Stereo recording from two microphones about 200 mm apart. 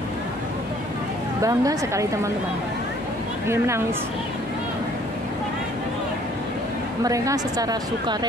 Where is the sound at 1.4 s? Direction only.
15° right (ahead or behind).